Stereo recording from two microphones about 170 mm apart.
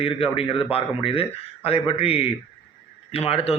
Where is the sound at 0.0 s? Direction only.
35° left (ahead or behind).